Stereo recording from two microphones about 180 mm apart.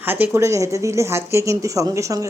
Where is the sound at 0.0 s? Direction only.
10° right (ahead or behind).